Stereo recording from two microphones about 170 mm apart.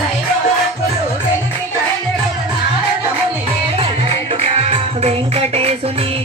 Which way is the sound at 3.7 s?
35° right (ahead or behind).